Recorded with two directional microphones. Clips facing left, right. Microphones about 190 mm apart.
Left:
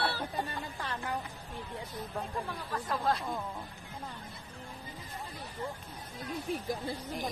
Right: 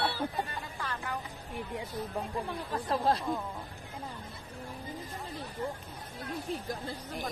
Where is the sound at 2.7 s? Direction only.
30° right (ahead or behind).